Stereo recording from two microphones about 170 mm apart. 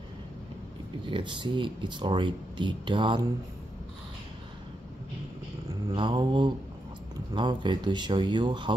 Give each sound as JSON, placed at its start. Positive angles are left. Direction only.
{"t": 1.0, "sound": "speech", "side_deg": -30}
{"t": 5.9, "sound": "speech", "side_deg": -30}